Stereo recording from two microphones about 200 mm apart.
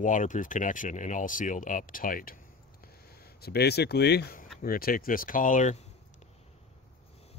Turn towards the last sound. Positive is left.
turn(degrees=40)  # may be behind; listen again after turning